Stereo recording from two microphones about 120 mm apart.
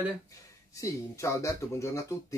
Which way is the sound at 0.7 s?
25° left (ahead or behind).